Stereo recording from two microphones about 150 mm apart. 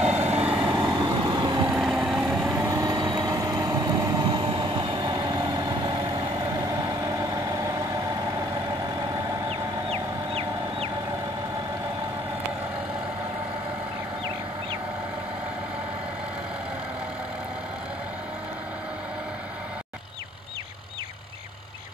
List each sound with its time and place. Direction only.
0.0 s vehicle: 45° right (ahead or behind)
0.5 s vehicle: 5° right (ahead or behind)
0.9 s vehicle: 30° right (ahead or behind)
1.7 s vehicle: 5° right (ahead or behind)
2.5 s vehicle: 20° right (ahead or behind)
9.5 s fowl: 40° right (ahead or behind)